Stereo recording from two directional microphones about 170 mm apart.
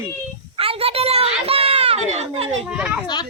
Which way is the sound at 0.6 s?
35° right (ahead or behind).